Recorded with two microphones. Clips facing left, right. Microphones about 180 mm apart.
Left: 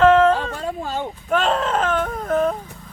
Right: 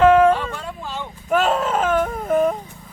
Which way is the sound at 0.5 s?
40° left (ahead or behind).